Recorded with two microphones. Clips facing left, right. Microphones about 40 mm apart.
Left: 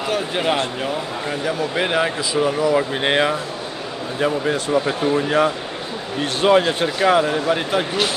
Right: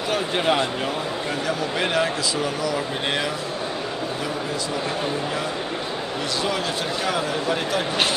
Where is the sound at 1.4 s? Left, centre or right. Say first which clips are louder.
Left 4 dB; centre; by 3.3 s left.